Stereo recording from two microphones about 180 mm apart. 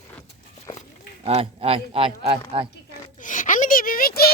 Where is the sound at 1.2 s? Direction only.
35° right (ahead or behind).